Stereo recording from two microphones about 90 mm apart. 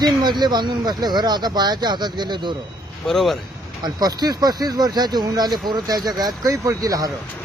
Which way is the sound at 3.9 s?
50° right (ahead or behind).